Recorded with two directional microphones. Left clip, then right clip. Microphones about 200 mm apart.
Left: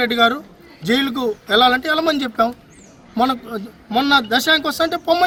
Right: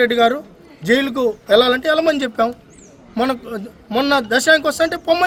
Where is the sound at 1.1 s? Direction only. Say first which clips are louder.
Right 3 dB; 5° right (ahead or behind).